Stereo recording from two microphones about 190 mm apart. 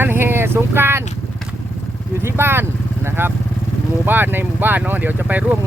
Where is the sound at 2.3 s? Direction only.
10° right (ahead or behind).